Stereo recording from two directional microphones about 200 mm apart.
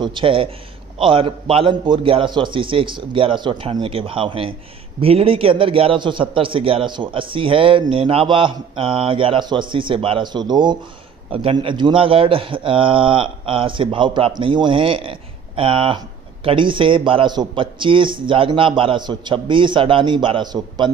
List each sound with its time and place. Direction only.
0.0 s a man's voice: 25° right (ahead or behind)